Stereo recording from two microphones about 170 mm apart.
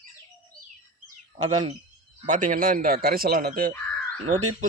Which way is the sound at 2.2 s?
50° right (ahead or behind).